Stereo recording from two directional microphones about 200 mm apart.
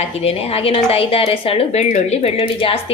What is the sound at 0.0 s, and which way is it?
A woman's voice, 30° left (ahead or behind).